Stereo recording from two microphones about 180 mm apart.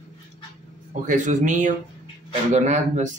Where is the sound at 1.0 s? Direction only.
45° right (ahead or behind).